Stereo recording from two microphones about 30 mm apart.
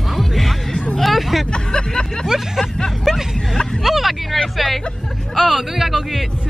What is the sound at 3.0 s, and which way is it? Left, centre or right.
Vehicle, centre.